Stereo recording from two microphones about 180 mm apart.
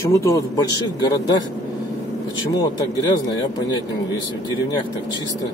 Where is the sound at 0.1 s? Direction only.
15° left (ahead or behind).